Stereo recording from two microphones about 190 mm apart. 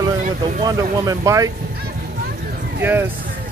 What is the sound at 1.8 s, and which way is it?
Vehicle, 55° right (ahead or behind).